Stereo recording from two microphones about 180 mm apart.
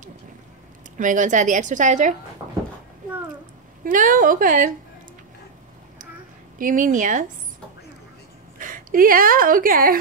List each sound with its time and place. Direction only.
0.9 s a woman's voice: 45° right (ahead or behind)
3.8 s a woman's voice: 50° right (ahead or behind)
6.6 s a woman's voice: 45° right (ahead or behind)
8.5 s speech: 50° right (ahead or behind)